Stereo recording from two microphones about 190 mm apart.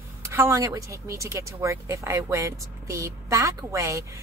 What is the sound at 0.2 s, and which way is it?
A woman's voice, 15° right (ahead or behind).